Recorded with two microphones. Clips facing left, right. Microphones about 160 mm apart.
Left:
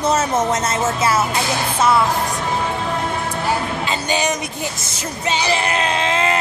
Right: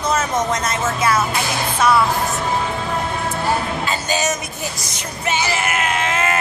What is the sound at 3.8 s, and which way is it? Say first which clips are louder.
Speech: left 1 dB; 20° left (ahead or behind).